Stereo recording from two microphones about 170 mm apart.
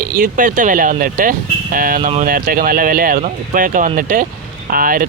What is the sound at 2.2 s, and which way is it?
Speech, 55° right (ahead or behind).